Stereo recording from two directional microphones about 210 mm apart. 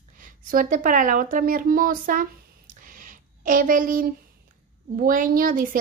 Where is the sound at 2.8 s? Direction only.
40° right (ahead or behind).